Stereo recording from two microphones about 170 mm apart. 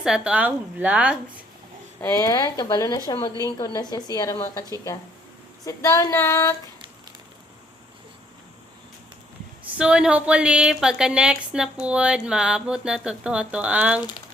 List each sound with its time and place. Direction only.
0.0 s a woman's voice: 5° right (ahead or behind)
2.0 s a woman's voice: 15° left (ahead or behind)
5.6 s a sound: 20° left (ahead or behind)
9.7 s speech: 5° right (ahead or behind)